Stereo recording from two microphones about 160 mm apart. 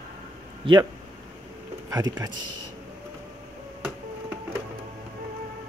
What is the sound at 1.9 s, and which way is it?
Speech, 25° right (ahead or behind).